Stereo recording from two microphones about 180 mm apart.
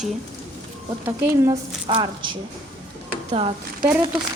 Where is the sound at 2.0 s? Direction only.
25° right (ahead or behind).